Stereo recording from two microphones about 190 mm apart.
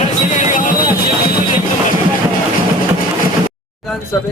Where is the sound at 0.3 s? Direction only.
45° left (ahead or behind).